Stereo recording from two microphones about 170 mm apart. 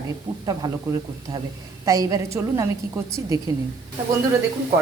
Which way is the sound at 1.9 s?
20° right (ahead or behind).